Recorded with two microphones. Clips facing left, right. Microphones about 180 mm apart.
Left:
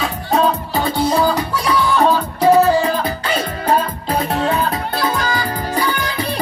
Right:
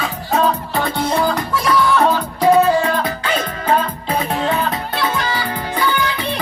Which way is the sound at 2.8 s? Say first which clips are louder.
Even; 35° left (ahead or behind).